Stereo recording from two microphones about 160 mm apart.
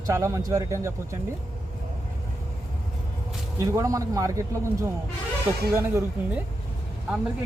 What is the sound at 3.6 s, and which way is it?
Speech, 20° right (ahead or behind).